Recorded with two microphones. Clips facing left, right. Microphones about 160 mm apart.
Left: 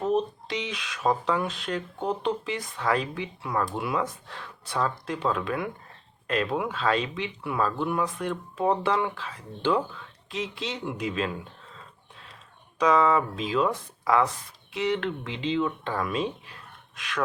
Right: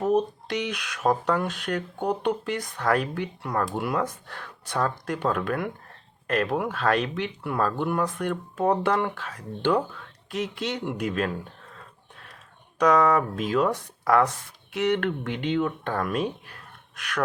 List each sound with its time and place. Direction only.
0.0 s a sound: 15° right (ahead or behind)
0.5 s speech: 65° right (ahead or behind)
1.0 s speech: 55° right (ahead or behind)